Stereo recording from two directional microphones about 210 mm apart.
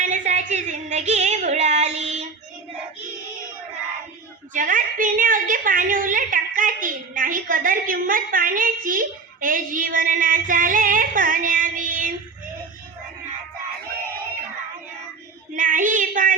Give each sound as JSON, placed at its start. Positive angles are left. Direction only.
{"t": 0.0, "sound": "a sound", "side_deg": -35}
{"t": 4.5, "sound": "a woman's voice", "side_deg": -40}
{"t": 15.5, "sound": "a woman's voice", "side_deg": -40}